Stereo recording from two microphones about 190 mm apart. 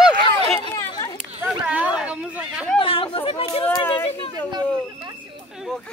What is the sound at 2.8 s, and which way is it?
Chatter, 30° left (ahead or behind).